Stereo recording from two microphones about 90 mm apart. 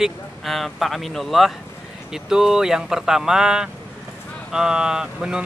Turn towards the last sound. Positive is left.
turn(degrees=-5)  # may be behind; listen again after turning